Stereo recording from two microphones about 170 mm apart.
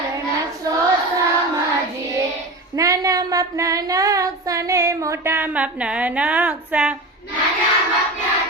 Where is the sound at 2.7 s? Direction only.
20° right (ahead or behind).